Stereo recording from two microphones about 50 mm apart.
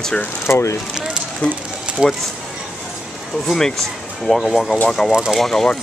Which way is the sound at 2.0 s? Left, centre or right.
Centre.